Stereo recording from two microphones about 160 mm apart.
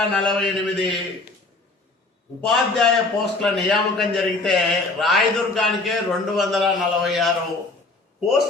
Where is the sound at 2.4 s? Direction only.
Centre (ahead or behind).